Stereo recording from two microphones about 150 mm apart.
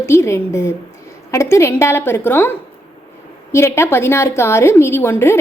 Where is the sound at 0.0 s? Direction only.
15° left (ahead or behind).